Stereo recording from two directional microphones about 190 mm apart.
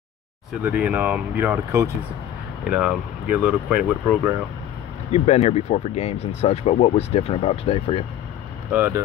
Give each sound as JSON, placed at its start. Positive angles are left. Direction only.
{"t": 0.6, "sound": "speech", "side_deg": -10}
{"t": 5.1, "sound": "speech", "side_deg": 35}
{"t": 8.7, "sound": "speech", "side_deg": -10}